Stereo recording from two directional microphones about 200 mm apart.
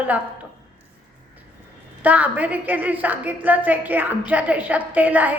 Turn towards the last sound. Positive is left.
turn(degrees=-10)  # may be behind; listen again after turning